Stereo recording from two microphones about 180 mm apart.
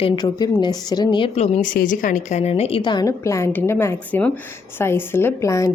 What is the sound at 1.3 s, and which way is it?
A woman's voice, 35° left (ahead or behind).